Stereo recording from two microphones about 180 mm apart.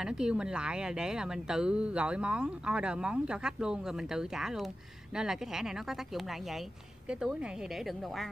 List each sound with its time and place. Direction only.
0.0 s speech: 5° right (ahead or behind)